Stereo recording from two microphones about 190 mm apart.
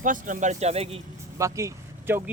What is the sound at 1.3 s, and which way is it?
Speech, 15° right (ahead or behind).